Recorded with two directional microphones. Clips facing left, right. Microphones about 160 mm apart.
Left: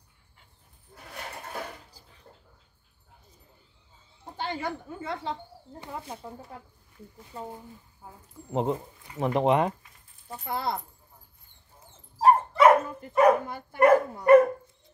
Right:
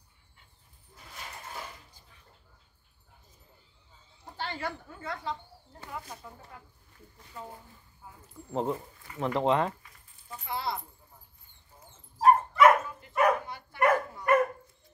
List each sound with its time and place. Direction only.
1.1 s a sound: 65° left (ahead or behind)
4.4 s speech: 20° left (ahead or behind)
10.2 s speech: 40° left (ahead or behind)
12.2 s dog: 30° left (ahead or behind)
13.5 s speech: 45° left (ahead or behind)